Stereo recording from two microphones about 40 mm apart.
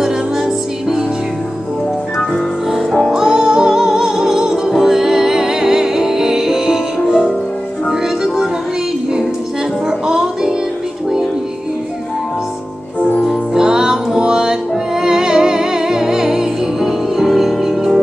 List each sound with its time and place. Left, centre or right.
0.0 s music: centre
3.2 s music: centre
9.8 s music: centre
13.6 s music: centre